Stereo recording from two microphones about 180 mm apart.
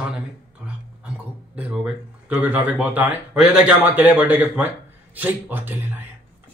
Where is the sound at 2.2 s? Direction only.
10° right (ahead or behind).